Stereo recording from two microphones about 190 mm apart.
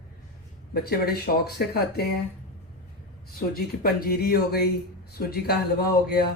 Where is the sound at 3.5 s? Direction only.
55° left (ahead or behind).